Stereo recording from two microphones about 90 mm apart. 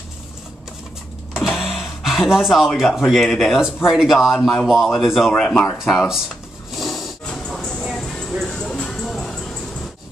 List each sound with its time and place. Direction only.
1.3 s speech: 5° right (ahead or behind)
5.8 s a sound: 5° right (ahead or behind)
7.8 s music: 5° left (ahead or behind)